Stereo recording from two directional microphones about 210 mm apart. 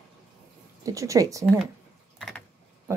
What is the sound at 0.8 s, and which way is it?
Speech, 15° right (ahead or behind).